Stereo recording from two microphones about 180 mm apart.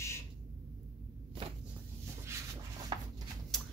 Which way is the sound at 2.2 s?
15° right (ahead or behind).